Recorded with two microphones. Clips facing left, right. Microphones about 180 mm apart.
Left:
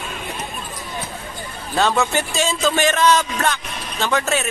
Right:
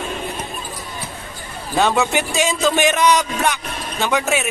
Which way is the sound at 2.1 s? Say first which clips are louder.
Right 2 dB; 15° right (ahead or behind).